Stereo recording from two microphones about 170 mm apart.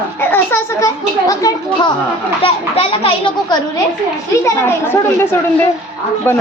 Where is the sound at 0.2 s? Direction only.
10° left (ahead or behind).